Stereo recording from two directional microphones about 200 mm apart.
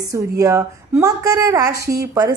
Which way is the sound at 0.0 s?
15° right (ahead or behind).